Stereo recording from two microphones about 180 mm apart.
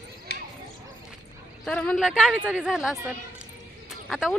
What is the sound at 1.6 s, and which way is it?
Speech, 5° left (ahead or behind).